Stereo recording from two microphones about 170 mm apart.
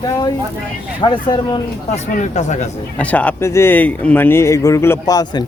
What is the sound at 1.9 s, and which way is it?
Speech, 45° left (ahead or behind).